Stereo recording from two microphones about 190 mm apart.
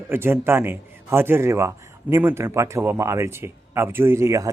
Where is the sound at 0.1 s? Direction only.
10° right (ahead or behind).